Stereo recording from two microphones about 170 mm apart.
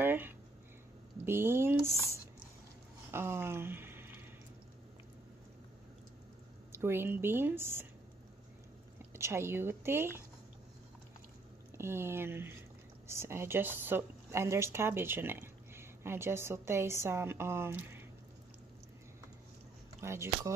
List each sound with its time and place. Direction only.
0.0 s a sound: 10° right (ahead or behind)
1.2 s speech: 15° right (ahead or behind)
3.1 s speech: 15° right (ahead or behind)
6.7 s speech: 15° right (ahead or behind)
9.1 s speech: 15° right (ahead or behind)
11.7 s speech: 15° right (ahead or behind)
20.0 s speech: 15° right (ahead or behind)